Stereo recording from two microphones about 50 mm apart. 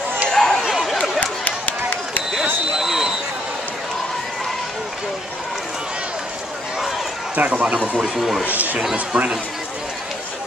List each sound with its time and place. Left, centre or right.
0.3 s chatter: centre
0.6 s chatter: centre
1.4 s a sound: left
2.7 s a sound: centre
7.3 s speech: right
8.2 s speech: centre
8.5 s speech: right